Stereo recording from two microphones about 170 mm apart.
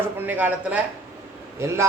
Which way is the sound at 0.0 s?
10° right (ahead or behind).